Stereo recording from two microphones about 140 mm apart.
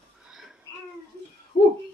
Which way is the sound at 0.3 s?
5° right (ahead or behind).